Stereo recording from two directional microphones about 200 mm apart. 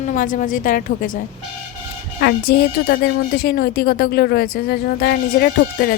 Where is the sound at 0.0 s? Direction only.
40° left (ahead or behind).